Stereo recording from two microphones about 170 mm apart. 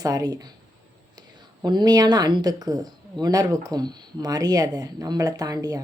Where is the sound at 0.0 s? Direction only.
20° right (ahead or behind).